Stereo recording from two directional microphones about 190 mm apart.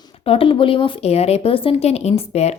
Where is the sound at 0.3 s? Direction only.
30° left (ahead or behind).